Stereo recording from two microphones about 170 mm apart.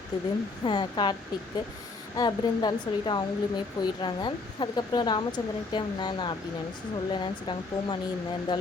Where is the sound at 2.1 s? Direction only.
25° left (ahead or behind).